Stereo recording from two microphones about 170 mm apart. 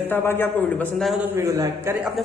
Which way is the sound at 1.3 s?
15° right (ahead or behind).